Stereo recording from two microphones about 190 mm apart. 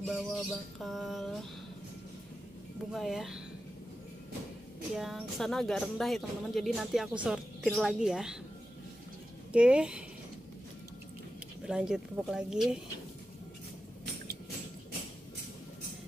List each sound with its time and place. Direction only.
0.1 s speech: centre (ahead or behind)
2.9 s speech: centre (ahead or behind)
4.9 s speech: centre (ahead or behind)
9.5 s speech: 5° right (ahead or behind)
11.6 s speech: 5° right (ahead or behind)